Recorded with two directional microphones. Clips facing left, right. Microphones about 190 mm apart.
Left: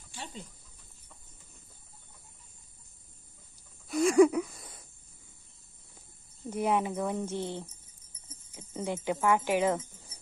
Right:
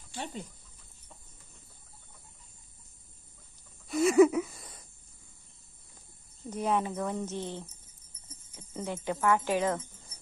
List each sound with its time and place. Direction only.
0.1 s chicken: 55° right (ahead or behind)
3.8 s a sound: centre (ahead or behind)
6.5 s speech: 10° left (ahead or behind)